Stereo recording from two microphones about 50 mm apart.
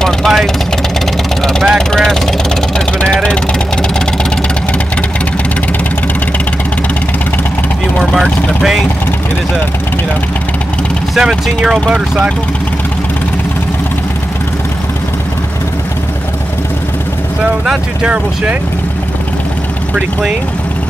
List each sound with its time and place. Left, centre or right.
0.0 s speech: centre
1.4 s vehicle: centre
11.1 s speech: centre
18.0 s speech: right